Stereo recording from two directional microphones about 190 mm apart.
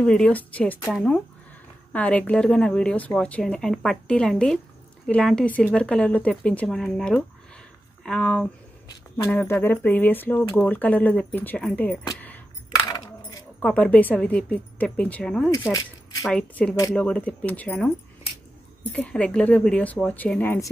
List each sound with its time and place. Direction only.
0.0 s a woman's voice: 5° left (ahead or behind)
8.8 s a woman's voice: 15° left (ahead or behind)
12.7 s coin: 20° left (ahead or behind)
13.6 s a woman's voice: 5° left (ahead or behind)